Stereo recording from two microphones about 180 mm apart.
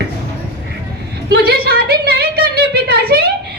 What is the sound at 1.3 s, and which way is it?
A woman's voice, 60° right (ahead or behind).